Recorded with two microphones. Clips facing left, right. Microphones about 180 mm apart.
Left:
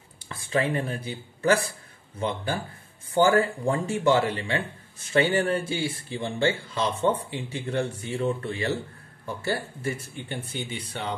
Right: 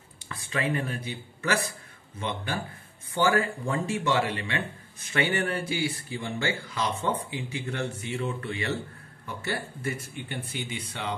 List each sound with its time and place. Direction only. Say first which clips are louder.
0.3 s speech: left 4 dB; 30° left (ahead or behind)